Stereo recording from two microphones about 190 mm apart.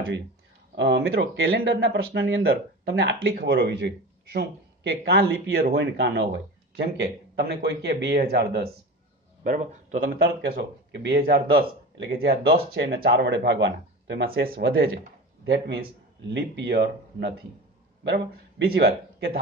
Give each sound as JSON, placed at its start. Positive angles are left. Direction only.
{"t": 0.7, "sound": "speech", "side_deg": -65}
{"t": 9.4, "sound": "speech", "side_deg": -40}
{"t": 14.6, "sound": "speech", "side_deg": -80}
{"t": 16.3, "sound": "speech", "side_deg": -60}